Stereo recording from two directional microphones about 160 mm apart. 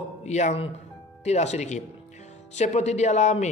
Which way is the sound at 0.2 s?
45° left (ahead or behind).